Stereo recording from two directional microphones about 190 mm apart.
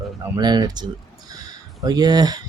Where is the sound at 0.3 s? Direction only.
20° right (ahead or behind).